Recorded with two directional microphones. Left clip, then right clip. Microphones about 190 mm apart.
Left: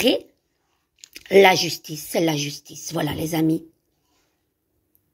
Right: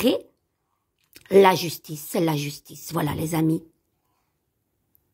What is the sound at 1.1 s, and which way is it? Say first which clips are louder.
A woman's voice: left 2 dB; 40° right (ahead or behind).